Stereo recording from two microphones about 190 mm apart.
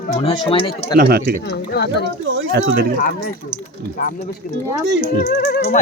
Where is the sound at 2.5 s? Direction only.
65° right (ahead or behind).